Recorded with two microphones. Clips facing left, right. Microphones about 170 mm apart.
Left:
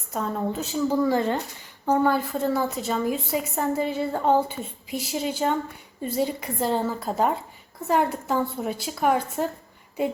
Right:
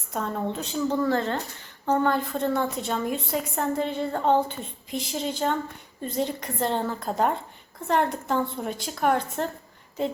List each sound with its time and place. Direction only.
0.1 s a woman's voice: centre (ahead or behind)